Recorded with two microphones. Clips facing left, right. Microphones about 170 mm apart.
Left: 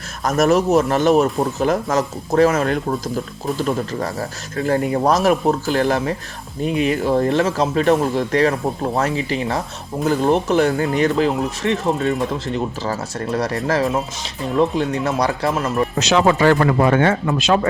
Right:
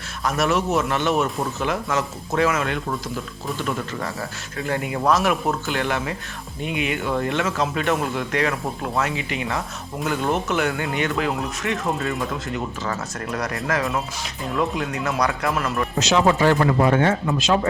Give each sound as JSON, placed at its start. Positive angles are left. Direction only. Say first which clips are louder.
{"t": 0.2, "sound": "speech", "louder": "left 6 dB", "side_deg": 45}
{"t": 16.0, "sound": "speech", "louder": "left 2 dB", "side_deg": 70}